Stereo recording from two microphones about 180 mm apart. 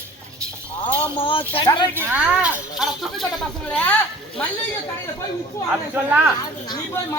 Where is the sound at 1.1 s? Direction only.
30° left (ahead or behind).